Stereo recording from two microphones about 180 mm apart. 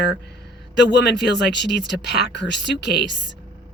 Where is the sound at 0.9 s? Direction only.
75° left (ahead or behind).